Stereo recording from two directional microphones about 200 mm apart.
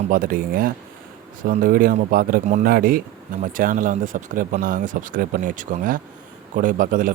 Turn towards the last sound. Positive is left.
turn(degrees=-40)  # may be behind; listen again after turning